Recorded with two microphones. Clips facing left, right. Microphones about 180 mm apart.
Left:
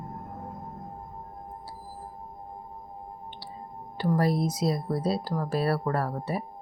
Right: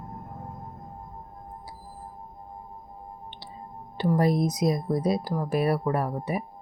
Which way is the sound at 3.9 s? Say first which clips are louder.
Right 2 dB; 20° right (ahead or behind).